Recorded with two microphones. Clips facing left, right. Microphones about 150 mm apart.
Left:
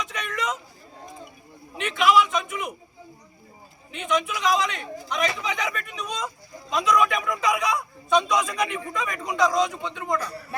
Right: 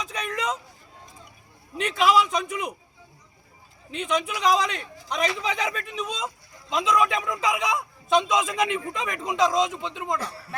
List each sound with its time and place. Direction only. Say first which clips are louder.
0.1 s vehicle: right 1 dB; 30° right (ahead or behind)
1.8 s a sound: left 1 dB; 35° right (ahead or behind)
3.9 s a man's voice: left 1 dB; 30° right (ahead or behind)